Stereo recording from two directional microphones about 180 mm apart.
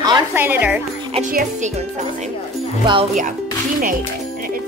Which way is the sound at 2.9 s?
25° right (ahead or behind).